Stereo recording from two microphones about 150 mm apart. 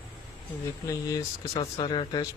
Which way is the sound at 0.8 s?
25° left (ahead or behind).